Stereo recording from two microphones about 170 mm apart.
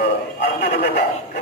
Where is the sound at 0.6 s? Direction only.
65° left (ahead or behind).